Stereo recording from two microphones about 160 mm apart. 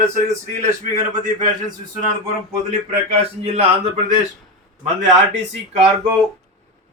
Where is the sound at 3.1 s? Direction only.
40° right (ahead or behind).